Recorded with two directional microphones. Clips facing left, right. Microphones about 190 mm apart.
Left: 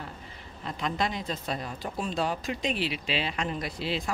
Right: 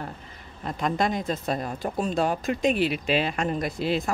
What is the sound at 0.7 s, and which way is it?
Speech, 50° right (ahead or behind).